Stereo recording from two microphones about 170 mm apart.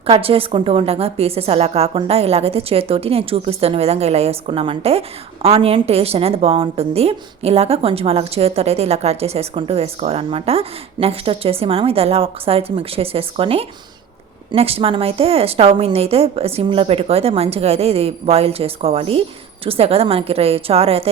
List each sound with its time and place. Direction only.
0.0 s a woman's voice: 35° right (ahead or behind)